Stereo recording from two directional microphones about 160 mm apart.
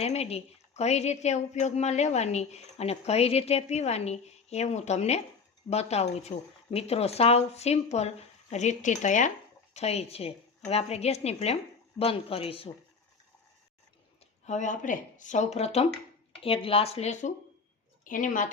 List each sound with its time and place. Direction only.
0.0 s a woman's voice: 40° left (ahead or behind)
14.4 s a woman's voice: 50° left (ahead or behind)